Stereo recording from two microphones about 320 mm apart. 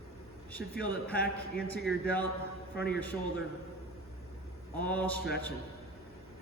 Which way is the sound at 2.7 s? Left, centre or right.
Left.